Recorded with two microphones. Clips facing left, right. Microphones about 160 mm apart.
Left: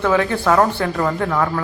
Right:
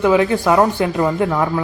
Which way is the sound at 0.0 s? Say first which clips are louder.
Right 3 dB; 15° right (ahead or behind).